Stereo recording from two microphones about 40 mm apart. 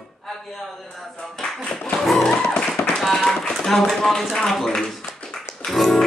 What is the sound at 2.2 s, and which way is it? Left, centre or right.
Music, left.